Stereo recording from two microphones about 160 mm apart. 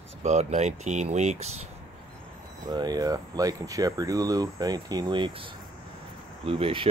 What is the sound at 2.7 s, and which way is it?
Speech, 25° right (ahead or behind).